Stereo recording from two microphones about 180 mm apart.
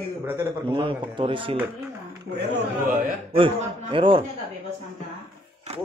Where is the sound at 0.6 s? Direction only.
25° right (ahead or behind).